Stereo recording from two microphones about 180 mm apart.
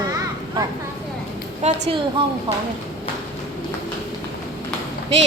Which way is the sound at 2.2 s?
25° right (ahead or behind).